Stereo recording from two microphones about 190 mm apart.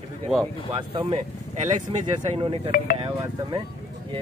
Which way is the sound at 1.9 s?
30° right (ahead or behind).